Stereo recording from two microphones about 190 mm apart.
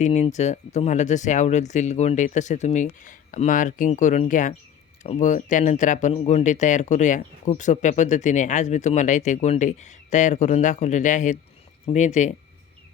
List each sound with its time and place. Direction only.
0.0 s speech: 35° left (ahead or behind)